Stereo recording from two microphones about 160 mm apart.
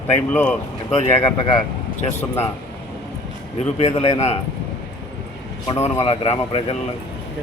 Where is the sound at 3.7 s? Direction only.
40° left (ahead or behind).